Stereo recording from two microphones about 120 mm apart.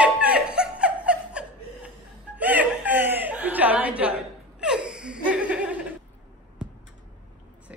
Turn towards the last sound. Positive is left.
turn(degrees=-10)  # may be behind; listen again after turning